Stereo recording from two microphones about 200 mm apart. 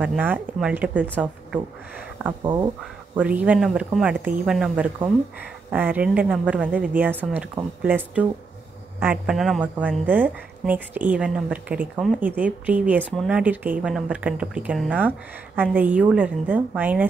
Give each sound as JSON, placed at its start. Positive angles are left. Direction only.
{"t": 0.0, "sound": "speech", "side_deg": -10}
{"t": 2.4, "sound": "speech", "side_deg": -20}
{"t": 3.2, "sound": "speech", "side_deg": -5}